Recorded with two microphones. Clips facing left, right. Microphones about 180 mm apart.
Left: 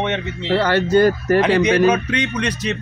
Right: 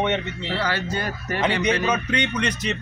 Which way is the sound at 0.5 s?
55° left (ahead or behind).